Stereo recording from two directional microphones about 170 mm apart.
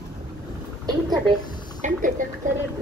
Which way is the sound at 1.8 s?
45° right (ahead or behind).